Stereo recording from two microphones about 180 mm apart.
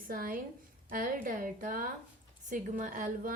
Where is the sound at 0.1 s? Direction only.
55° right (ahead or behind).